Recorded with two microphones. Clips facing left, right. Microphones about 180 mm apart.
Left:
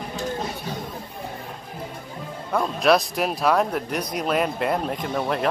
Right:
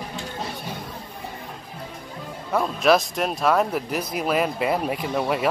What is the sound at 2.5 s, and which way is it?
Speech, 5° right (ahead or behind).